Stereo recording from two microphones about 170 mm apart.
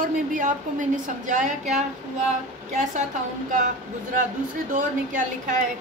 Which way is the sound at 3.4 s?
50° right (ahead or behind).